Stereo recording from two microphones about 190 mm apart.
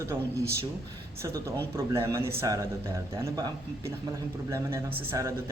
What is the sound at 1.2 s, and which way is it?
Speech, 15° right (ahead or behind).